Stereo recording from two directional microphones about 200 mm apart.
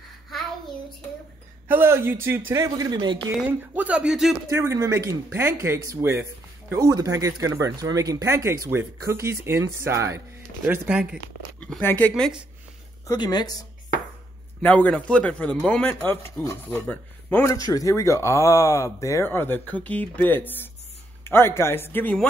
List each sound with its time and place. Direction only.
1.7 s speech: 10° right (ahead or behind)
3.3 s speech: 5° right (ahead or behind)
4.5 s speech: 15° right (ahead or behind)
11.6 s speech: 5° left (ahead or behind)
13.0 s speech: 20° left (ahead or behind)
14.6 s a man's voice: 10° left (ahead or behind)